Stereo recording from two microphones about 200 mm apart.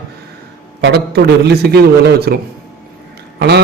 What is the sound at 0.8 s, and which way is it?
A man's voice, 55° right (ahead or behind).